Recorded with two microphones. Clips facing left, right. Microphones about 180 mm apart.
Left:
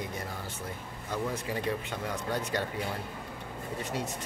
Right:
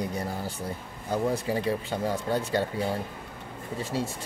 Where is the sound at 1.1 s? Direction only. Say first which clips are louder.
Right 6 dB; 30° right (ahead or behind).